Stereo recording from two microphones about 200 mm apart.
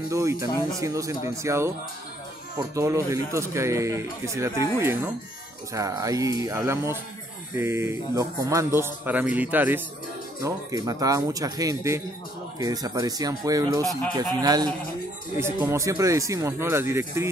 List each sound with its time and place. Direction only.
0.1 s speech: 15° right (ahead or behind)
2.7 s a man's voice: 15° right (ahead or behind)